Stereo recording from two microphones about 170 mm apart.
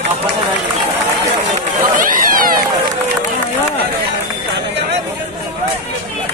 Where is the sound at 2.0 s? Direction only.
55° right (ahead or behind).